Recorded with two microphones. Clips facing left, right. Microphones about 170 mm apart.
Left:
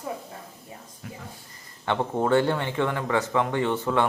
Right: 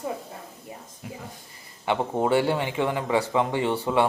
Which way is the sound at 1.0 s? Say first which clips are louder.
Right 2 dB; 20° right (ahead or behind).